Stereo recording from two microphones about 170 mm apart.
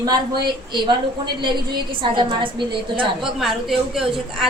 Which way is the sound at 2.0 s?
30° right (ahead or behind).